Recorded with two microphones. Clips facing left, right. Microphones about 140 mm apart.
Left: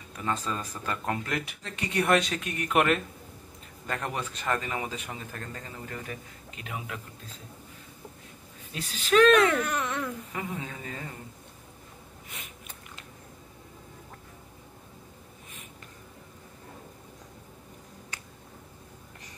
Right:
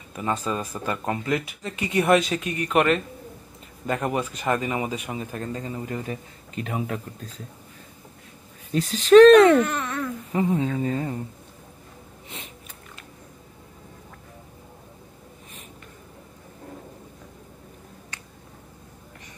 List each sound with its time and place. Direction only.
0.2 s speech: 10° right (ahead or behind); by 3.0 s 5° left (ahead or behind)
3.8 s a man's voice: 10° right (ahead or behind)
6.5 s speech: 40° right (ahead or behind)
8.7 s speech: 40° right (ahead or behind)
9.7 s speech: 10° left (ahead or behind)
10.3 s speech: 30° right (ahead or behind)